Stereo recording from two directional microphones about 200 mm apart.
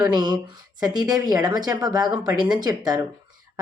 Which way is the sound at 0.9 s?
20° right (ahead or behind).